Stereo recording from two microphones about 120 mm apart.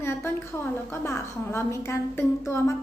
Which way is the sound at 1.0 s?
20° left (ahead or behind).